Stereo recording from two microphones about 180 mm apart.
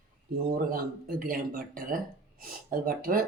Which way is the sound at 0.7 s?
50° right (ahead or behind).